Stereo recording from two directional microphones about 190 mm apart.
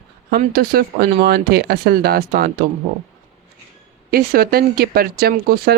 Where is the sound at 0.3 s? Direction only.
50° right (ahead or behind).